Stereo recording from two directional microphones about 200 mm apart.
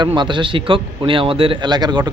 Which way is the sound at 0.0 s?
25° right (ahead or behind).